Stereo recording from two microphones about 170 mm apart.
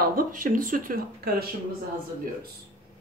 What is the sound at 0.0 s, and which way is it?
Speech, 55° right (ahead or behind).